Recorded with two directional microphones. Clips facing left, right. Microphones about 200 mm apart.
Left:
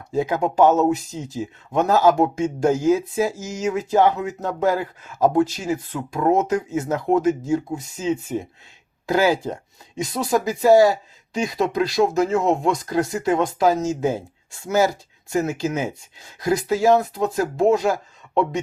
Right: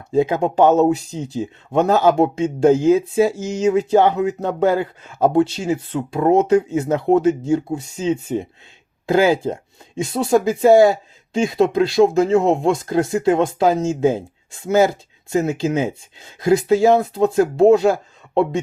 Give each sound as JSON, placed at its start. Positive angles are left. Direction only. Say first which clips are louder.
{"t": 0.1, "sound": "speech", "louder": "right 4 dB", "side_deg": -25}